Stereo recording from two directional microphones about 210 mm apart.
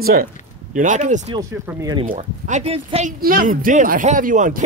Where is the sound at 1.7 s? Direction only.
15° right (ahead or behind).